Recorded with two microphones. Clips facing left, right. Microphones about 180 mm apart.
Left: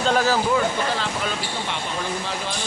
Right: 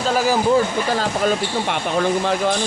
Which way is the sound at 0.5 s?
45° right (ahead or behind).